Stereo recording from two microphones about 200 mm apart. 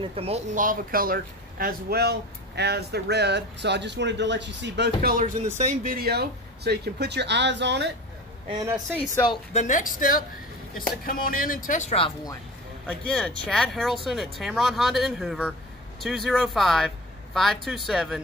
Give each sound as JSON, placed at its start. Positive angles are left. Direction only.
{"t": 0.0, "sound": "speech", "side_deg": -30}
{"t": 8.7, "sound": "speech", "side_deg": 0}
{"t": 9.1, "sound": "speech", "side_deg": 20}
{"t": 9.5, "sound": "speech", "side_deg": 35}
{"t": 12.8, "sound": "speech", "side_deg": 5}